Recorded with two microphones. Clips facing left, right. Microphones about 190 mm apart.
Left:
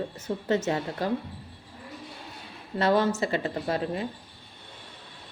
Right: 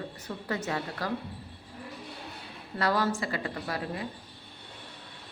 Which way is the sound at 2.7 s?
25° left (ahead or behind).